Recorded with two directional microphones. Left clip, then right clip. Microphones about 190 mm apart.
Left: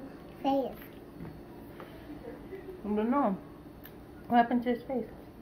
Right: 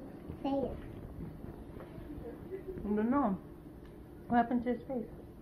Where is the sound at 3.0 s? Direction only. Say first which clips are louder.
Left 4 dB; 20° left (ahead or behind).